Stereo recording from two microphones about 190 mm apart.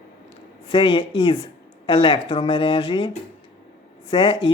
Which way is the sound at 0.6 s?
25° left (ahead or behind).